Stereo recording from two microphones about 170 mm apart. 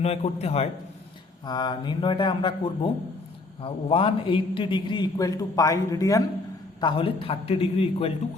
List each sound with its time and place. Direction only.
0.0 s a man's voice: 35° left (ahead or behind)
1.5 s a man's voice: 25° left (ahead or behind)
3.6 s a man's voice: 35° left (ahead or behind)